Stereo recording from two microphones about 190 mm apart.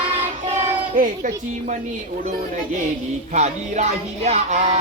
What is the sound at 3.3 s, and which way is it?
Music, 35° right (ahead or behind).